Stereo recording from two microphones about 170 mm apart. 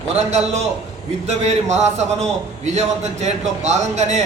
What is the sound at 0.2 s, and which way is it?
A man's voice, 40° right (ahead or behind).